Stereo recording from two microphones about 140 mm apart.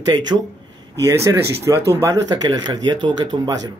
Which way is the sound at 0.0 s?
30° right (ahead or behind).